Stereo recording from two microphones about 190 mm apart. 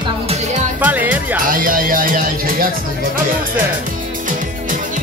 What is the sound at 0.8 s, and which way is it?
Speech, 10° right (ahead or behind).